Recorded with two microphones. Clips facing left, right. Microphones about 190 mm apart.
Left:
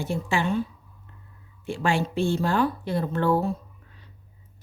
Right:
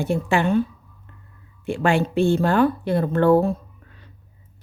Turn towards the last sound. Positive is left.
turn(degrees=-55)  # may be behind; listen again after turning